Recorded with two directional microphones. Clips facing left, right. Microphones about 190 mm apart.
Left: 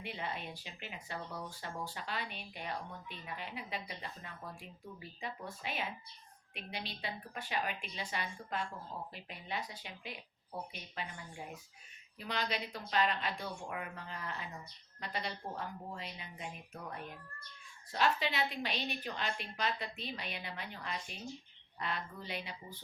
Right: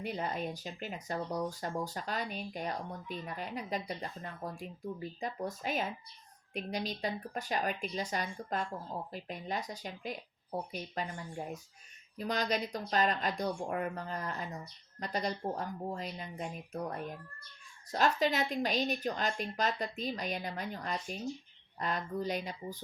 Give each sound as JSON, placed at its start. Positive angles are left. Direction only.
{"t": 0.0, "sound": "a woman's voice", "side_deg": -40}